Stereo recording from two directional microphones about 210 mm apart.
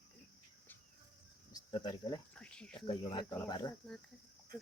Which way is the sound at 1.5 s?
20° left (ahead or behind).